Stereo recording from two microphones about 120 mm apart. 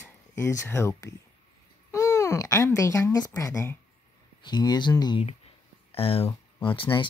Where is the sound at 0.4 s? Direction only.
20° left (ahead or behind); by 5.2 s 35° left (ahead or behind).